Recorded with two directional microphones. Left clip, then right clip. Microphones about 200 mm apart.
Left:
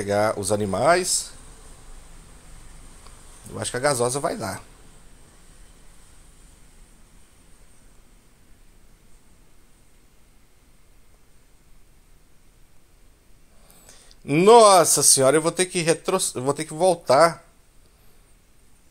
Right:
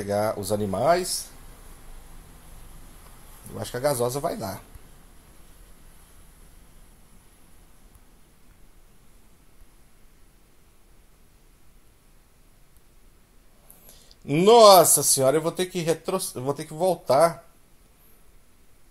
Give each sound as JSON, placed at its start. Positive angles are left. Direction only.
{"t": 0.0, "sound": "speech", "side_deg": 15}
{"t": 3.5, "sound": "speech", "side_deg": 10}
{"t": 13.8, "sound": "speech", "side_deg": 10}